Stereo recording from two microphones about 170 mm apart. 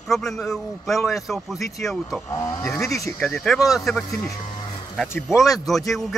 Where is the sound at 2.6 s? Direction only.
15° left (ahead or behind).